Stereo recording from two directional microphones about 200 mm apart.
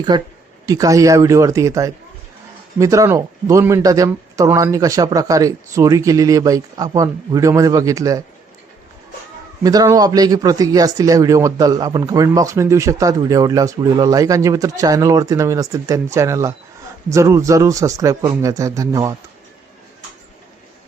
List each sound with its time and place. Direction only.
0.1 s speech: 20° right (ahead or behind)
9.6 s speech: 20° right (ahead or behind)